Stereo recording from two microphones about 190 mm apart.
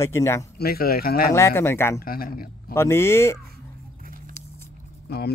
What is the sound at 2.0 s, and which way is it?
Speech, 50° left (ahead or behind).